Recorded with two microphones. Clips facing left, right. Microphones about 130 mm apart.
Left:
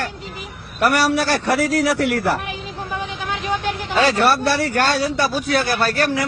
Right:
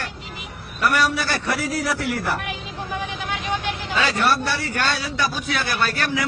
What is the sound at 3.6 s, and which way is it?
Vehicle, 50° left (ahead or behind).